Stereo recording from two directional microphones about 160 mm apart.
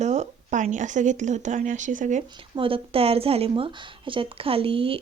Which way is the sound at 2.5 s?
35° right (ahead or behind).